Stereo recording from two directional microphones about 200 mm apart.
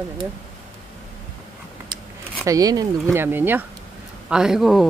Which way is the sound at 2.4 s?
15° right (ahead or behind).